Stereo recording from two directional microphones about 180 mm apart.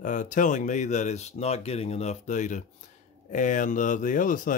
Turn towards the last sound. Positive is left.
turn(degrees=50)  # may be behind; listen again after turning